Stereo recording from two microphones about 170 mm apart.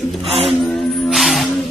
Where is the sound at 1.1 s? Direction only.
Centre (ahead or behind).